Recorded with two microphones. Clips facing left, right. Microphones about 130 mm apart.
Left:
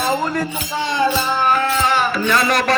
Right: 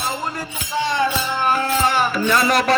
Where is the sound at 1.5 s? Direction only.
35° right (ahead or behind).